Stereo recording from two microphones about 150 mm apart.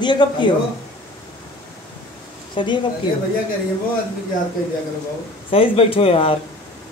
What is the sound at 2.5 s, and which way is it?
Speech, 30° left (ahead or behind).